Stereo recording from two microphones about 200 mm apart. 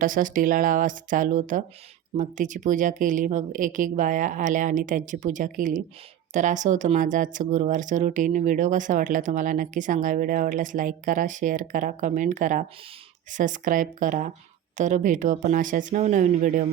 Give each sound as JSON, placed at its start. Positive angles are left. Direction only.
{"t": 0.0, "sound": "speech", "side_deg": -40}